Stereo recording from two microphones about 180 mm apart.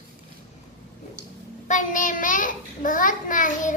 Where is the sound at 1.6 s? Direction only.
45° left (ahead or behind).